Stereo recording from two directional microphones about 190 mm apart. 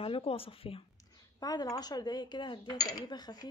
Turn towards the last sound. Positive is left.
turn(degrees=20)  # may be behind; listen again after turning